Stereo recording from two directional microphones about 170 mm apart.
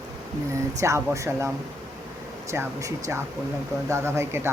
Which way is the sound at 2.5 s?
15° right (ahead or behind).